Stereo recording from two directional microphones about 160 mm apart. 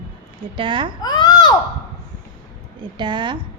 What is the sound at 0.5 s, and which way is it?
Speech, 30° right (ahead or behind).